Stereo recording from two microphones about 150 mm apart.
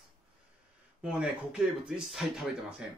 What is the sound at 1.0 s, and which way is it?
Speech, 5° right (ahead or behind).